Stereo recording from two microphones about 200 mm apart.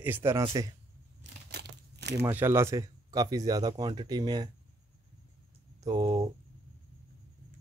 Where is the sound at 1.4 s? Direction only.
55° right (ahead or behind).